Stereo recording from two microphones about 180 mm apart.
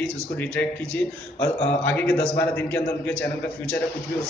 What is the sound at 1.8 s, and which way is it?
Speech, 10° left (ahead or behind).